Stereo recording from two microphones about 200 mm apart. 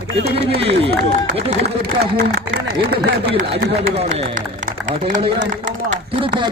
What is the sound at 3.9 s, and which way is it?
Speech, 30° right (ahead or behind).